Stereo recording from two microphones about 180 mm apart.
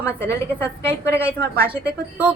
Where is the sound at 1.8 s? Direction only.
10° right (ahead or behind).